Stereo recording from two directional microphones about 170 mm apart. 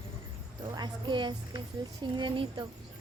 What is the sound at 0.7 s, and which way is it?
A woman's voice, 25° right (ahead or behind).